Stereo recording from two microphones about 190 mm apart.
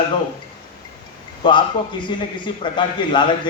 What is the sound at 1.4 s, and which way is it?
A man's voice, 25° left (ahead or behind).